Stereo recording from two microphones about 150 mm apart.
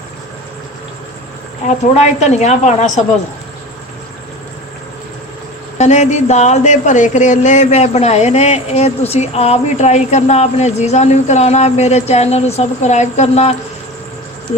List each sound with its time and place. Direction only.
1.6 s speech: 50° left (ahead or behind)
5.7 s speech: 50° left (ahead or behind)